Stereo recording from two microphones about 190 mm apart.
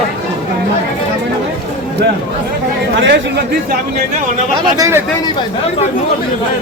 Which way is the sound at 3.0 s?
65° right (ahead or behind).